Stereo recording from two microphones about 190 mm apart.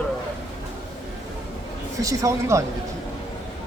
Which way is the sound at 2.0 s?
15° right (ahead or behind).